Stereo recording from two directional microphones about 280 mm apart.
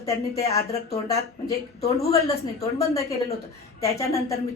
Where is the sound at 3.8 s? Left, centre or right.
Centre.